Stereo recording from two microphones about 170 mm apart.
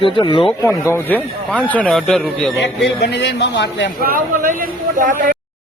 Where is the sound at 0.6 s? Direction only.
15° left (ahead or behind).